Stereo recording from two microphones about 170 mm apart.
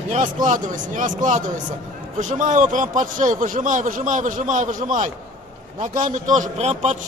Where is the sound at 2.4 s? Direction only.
50° right (ahead or behind).